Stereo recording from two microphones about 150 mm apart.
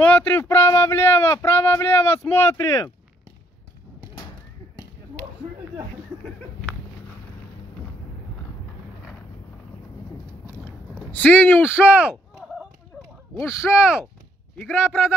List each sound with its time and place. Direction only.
0.0 s speech: 10° left (ahead or behind)
11.1 s speech: 10° left (ahead or behind)
11.8 s artillery fire: 10° right (ahead or behind)
13.3 s speech: 35° right (ahead or behind)
13.7 s speech: 5° right (ahead or behind)